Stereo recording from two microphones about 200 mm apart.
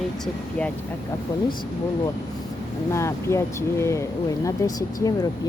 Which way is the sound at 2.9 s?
15° left (ahead or behind).